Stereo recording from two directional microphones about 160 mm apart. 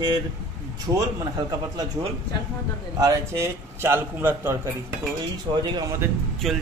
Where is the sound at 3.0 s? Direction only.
20° right (ahead or behind).